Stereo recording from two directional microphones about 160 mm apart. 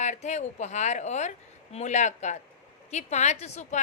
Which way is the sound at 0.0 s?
45° left (ahead or behind).